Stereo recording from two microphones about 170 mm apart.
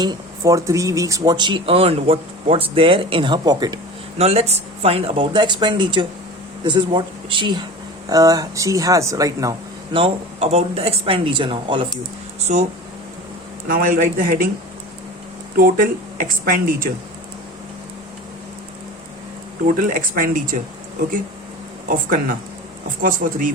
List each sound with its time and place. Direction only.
0.0 s speech: 20° right (ahead or behind)
4.2 s speech: 40° right (ahead or behind); by 9.6 s 20° right (ahead or behind)
9.9 s speech: 35° right (ahead or behind)
12.5 s speech: 45° right (ahead or behind)
13.7 s speech: 60° right (ahead or behind)
15.5 s speech: 55° right (ahead or behind)
19.6 s speech: 50° right (ahead or behind)
21.8 s speech: 55° right (ahead or behind)